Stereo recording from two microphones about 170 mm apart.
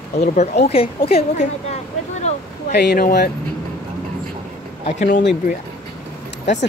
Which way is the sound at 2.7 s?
65° left (ahead or behind).